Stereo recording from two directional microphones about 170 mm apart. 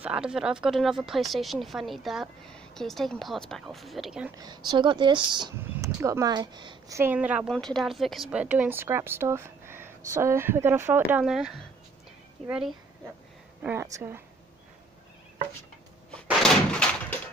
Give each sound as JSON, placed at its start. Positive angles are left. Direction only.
{"t": 0.0, "sound": "speech", "side_deg": -5}
{"t": 4.4, "sound": "speech", "side_deg": -25}
{"t": 7.0, "sound": "a woman's voice", "side_deg": -10}
{"t": 7.4, "sound": "a woman's voice", "side_deg": 5}
{"t": 16.3, "sound": "door", "side_deg": 5}